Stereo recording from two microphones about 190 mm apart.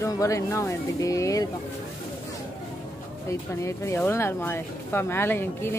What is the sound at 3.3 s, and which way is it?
Speech, 15° left (ahead or behind).